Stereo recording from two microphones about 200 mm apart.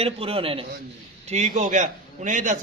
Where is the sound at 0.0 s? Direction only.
30° right (ahead or behind).